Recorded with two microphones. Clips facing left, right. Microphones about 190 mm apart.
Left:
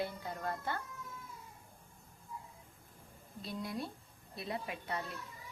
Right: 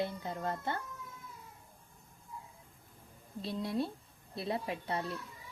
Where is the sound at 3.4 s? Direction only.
25° right (ahead or behind).